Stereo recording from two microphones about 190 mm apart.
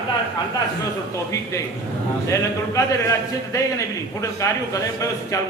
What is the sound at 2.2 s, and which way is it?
A man's voice, 15° left (ahead or behind).